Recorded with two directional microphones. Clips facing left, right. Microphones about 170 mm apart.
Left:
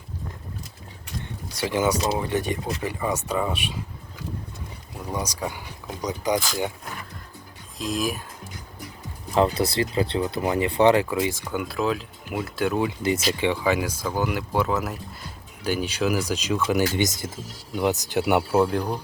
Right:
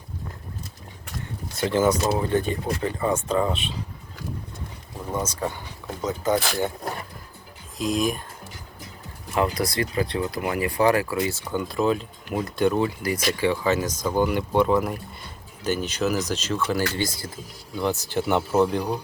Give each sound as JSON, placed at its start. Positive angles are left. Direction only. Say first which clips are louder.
{"t": 1.6, "sound": "speech", "louder": "right 2 dB", "side_deg": 10}
{"t": 5.1, "sound": "speech", "louder": "right 2 dB", "side_deg": 10}
{"t": 7.8, "sound": "speech", "louder": "right 3 dB", "side_deg": 0}
{"t": 9.3, "sound": "speech", "louder": "left 3 dB", "side_deg": 30}
{"t": 11.5, "sound": "speech", "louder": "right 4 dB", "side_deg": 0}
{"t": 13.0, "sound": "speech", "louder": "left 1 dB", "side_deg": 25}
{"t": 18.3, "sound": "speech", "louder": "right 1 dB", "side_deg": 5}